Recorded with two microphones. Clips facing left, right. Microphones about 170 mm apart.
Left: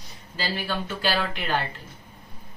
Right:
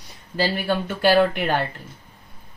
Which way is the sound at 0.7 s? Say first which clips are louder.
Right 9 dB; 55° right (ahead or behind).